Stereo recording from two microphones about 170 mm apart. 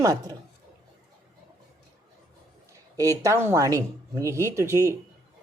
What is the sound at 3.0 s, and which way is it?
Speech, 20° right (ahead or behind).